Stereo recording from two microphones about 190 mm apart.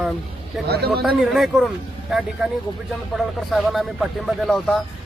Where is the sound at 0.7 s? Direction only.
55° right (ahead or behind).